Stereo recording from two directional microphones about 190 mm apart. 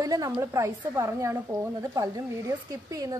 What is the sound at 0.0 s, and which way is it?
A woman's voice, 20° right (ahead or behind).